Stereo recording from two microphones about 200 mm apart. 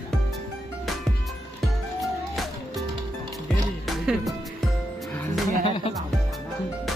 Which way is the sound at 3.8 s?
Centre (ahead or behind).